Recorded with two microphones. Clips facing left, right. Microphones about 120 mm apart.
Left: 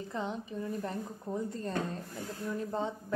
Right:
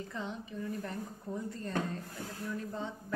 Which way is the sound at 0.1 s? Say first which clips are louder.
Left 4 dB; 25° left (ahead or behind).